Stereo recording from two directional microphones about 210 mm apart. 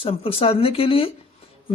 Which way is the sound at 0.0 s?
25° left (ahead or behind).